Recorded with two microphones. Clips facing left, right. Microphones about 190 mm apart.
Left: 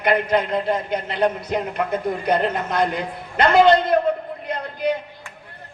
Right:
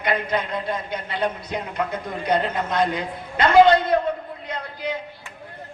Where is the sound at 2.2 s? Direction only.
60° left (ahead or behind).